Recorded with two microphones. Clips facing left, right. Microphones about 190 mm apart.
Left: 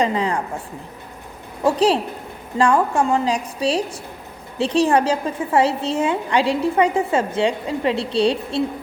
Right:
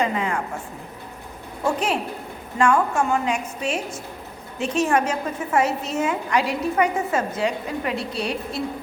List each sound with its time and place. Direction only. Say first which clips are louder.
0.0 s a woman's voice: left 3 dB; 30° left (ahead or behind)
1.6 s a woman's voice: left 6 dB; 35° left (ahead or behind)